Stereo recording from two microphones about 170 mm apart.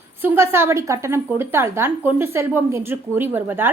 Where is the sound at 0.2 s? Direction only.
15° right (ahead or behind).